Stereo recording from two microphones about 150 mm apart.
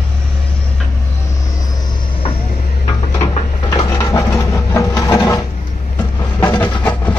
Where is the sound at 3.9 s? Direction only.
20° left (ahead or behind).